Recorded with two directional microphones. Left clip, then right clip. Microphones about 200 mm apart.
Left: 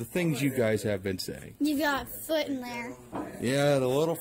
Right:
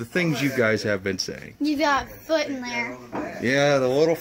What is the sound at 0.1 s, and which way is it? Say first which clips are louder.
Speech: right 6 dB; 5° left (ahead or behind).